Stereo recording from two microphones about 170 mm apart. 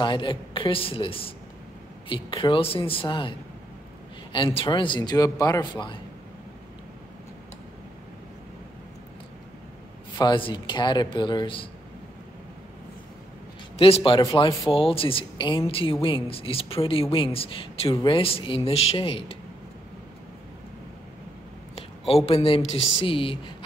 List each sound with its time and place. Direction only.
0.0 s a woman's voice: 30° left (ahead or behind)
10.1 s speech: 30° left (ahead or behind)
13.7 s speech: 35° left (ahead or behind)
14.7 s a woman's voice: 30° left (ahead or behind)
21.7 s a sound: 35° left (ahead or behind)
22.7 s a woman's voice: 30° left (ahead or behind)